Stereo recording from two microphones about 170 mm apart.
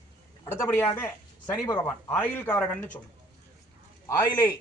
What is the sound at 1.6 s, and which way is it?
Speech, 15° left (ahead or behind).